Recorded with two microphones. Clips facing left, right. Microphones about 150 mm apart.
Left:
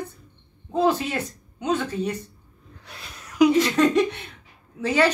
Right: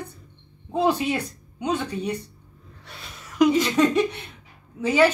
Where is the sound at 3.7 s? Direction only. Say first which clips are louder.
Left 1 dB; 10° right (ahead or behind).